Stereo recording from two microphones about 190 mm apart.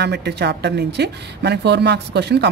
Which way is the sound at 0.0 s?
60° right (ahead or behind).